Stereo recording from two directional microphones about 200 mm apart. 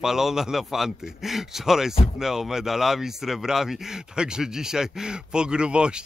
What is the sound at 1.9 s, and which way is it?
Speech, 30° left (ahead or behind).